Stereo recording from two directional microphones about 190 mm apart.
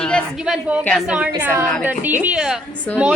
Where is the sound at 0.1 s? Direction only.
5° right (ahead or behind).